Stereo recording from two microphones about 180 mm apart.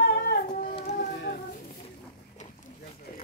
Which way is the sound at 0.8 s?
65° left (ahead or behind).